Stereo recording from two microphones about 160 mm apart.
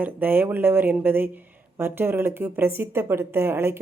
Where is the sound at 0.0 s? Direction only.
10° right (ahead or behind).